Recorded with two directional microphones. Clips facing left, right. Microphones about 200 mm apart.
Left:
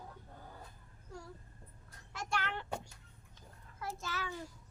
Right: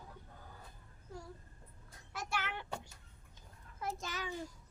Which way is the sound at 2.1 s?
5° right (ahead or behind).